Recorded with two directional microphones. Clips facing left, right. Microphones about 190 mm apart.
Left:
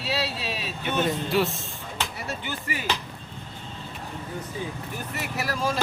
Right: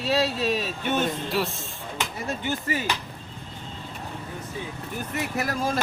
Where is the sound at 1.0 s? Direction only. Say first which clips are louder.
Left 2 dB; centre (ahead or behind).